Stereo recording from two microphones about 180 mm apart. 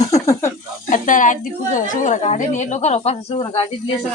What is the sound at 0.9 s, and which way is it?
A woman's voice, 45° left (ahead or behind).